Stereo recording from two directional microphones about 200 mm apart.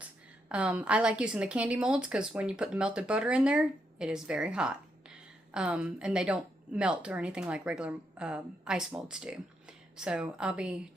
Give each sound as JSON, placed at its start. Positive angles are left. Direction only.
{"t": 0.0, "sound": "a woman's voice", "side_deg": -5}